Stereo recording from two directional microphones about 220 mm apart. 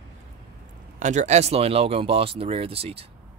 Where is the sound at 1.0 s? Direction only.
35° right (ahead or behind).